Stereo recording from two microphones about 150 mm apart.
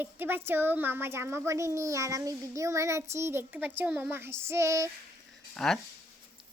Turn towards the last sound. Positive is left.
turn(degrees=5)  # may be behind; listen again after turning